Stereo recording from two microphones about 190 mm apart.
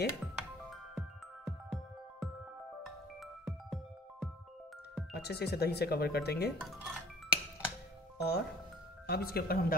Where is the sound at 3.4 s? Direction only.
Centre (ahead or behind).